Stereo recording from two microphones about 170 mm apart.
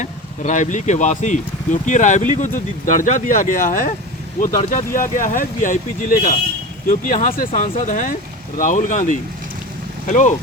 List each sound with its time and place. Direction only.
0.0 s speech: 45° left (ahead or behind)